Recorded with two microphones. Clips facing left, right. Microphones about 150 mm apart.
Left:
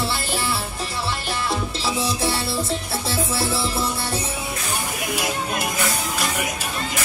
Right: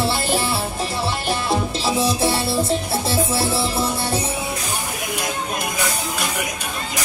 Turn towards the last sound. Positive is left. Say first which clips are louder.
# even
turn(degrees=10)  # may be behind; listen again after turning